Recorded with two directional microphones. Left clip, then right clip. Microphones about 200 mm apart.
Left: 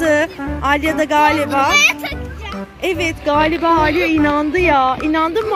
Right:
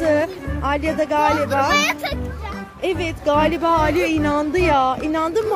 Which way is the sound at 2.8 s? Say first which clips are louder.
Left 3 dB; centre (ahead or behind).